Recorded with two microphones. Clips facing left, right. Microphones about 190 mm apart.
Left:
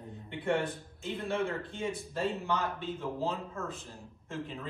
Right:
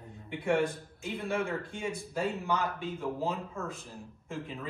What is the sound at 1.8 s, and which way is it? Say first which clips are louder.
Speech: left 1 dB; centre (ahead or behind).